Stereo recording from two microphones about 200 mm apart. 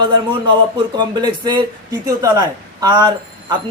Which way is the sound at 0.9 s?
20° right (ahead or behind).